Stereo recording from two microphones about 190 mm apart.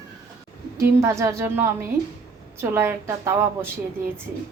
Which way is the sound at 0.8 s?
15° right (ahead or behind).